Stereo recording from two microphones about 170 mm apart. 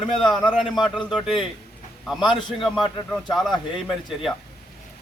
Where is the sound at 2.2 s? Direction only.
25° left (ahead or behind).